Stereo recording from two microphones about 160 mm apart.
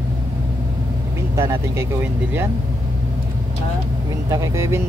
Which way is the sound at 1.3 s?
15° right (ahead or behind).